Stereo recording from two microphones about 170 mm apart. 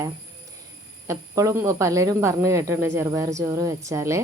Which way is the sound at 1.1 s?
20° right (ahead or behind).